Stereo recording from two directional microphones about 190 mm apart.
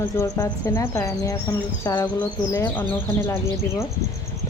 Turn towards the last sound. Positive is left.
turn(degrees=15)  # may be behind; listen again after turning